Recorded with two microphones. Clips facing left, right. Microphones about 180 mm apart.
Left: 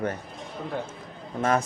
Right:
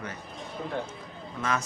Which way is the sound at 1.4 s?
45° left (ahead or behind).